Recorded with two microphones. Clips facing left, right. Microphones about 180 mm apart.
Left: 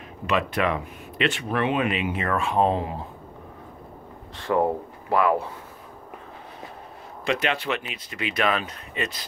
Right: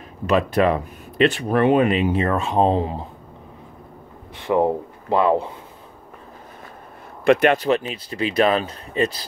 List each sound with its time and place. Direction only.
0.3 s speech: 35° right (ahead or behind)
4.4 s speech: 20° right (ahead or behind)
7.2 s speech: 55° right (ahead or behind)
7.5 s speech: 40° right (ahead or behind)